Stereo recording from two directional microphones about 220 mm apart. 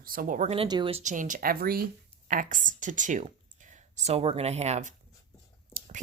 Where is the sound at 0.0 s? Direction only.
40° right (ahead or behind).